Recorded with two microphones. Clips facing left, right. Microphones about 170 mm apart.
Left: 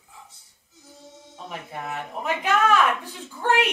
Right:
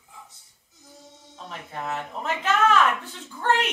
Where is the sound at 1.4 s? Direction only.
15° left (ahead or behind).